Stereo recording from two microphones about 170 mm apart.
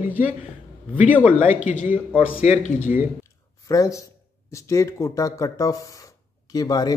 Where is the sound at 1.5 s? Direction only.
50° left (ahead or behind).